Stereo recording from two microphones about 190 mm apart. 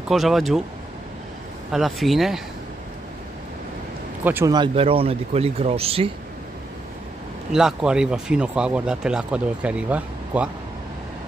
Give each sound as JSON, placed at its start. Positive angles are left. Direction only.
{"t": 0.1, "sound": "speech", "side_deg": 0}
{"t": 1.7, "sound": "speech", "side_deg": 0}
{"t": 4.2, "sound": "speech", "side_deg": -10}
{"t": 4.6, "sound": "speech", "side_deg": -30}
{"t": 7.5, "sound": "speech", "side_deg": -5}